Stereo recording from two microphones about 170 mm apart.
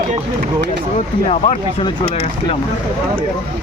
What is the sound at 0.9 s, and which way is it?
Speech, 40° left (ahead or behind).